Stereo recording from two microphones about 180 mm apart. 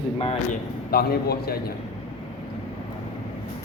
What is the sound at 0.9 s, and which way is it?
Speech, 60° left (ahead or behind).